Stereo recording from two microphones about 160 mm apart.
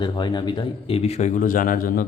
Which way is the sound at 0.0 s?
30° left (ahead or behind).